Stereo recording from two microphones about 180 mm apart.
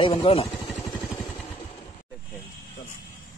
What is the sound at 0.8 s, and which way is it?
Vehicle, 10° left (ahead or behind).